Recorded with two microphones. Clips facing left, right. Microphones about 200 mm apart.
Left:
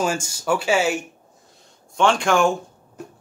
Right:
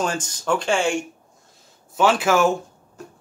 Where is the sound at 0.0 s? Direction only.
10° left (ahead or behind).